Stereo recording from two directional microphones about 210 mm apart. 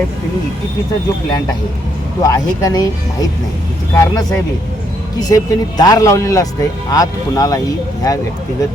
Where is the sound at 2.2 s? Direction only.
15° left (ahead or behind).